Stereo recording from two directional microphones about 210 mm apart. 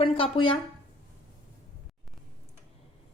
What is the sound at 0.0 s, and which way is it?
Speech, 25° left (ahead or behind).